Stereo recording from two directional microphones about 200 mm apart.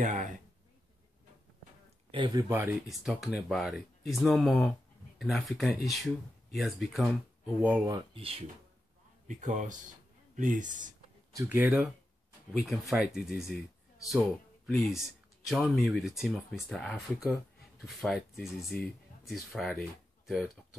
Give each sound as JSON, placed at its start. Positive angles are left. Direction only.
{"t": 0.0, "sound": "a sound", "side_deg": -40}
{"t": 2.0, "sound": "speech", "side_deg": -25}
{"t": 2.9, "sound": "speech", "side_deg": 0}
{"t": 7.6, "sound": "speech", "side_deg": -15}
{"t": 11.3, "sound": "speech", "side_deg": -10}
{"t": 14.7, "sound": "speech", "side_deg": 0}